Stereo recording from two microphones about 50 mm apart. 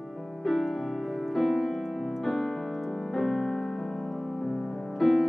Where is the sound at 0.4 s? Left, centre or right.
Centre.